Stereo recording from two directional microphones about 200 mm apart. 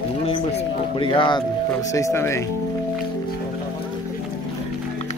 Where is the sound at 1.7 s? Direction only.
15° left (ahead or behind).